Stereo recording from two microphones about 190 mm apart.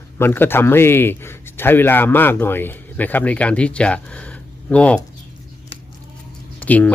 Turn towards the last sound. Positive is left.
turn(degrees=10)  # may be behind; listen again after turning